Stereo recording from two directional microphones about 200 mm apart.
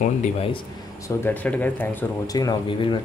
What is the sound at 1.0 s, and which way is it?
Speech, 10° left (ahead or behind).